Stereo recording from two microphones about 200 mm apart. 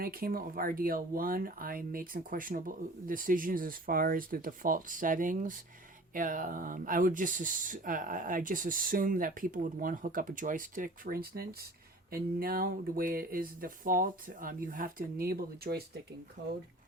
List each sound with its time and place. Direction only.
0.0 s speech: 45° right (ahead or behind)